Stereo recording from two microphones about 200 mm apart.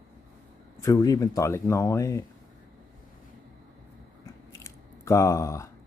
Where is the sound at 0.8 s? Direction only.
15° left (ahead or behind).